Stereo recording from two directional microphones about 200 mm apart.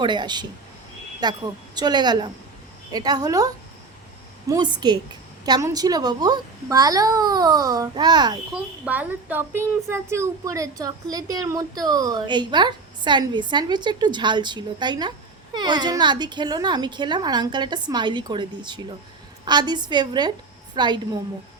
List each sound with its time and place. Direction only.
0.0 s a child's voice: 20° right (ahead or behind)
8.5 s a child's voice: 5° right (ahead or behind); by 21.0 s 20° right (ahead or behind)